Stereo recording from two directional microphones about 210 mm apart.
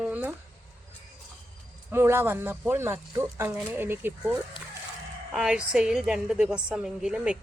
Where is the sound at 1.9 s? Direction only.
10° right (ahead or behind).